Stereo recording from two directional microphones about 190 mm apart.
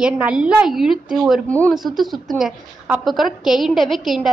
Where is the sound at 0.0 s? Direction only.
5° right (ahead or behind).